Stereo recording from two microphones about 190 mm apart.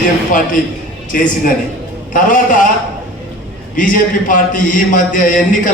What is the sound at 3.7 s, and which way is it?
A man's voice, 45° left (ahead or behind).